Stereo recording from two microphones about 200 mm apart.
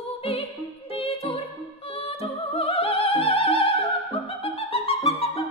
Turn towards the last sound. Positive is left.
turn(degrees=30)  # may be behind; listen again after turning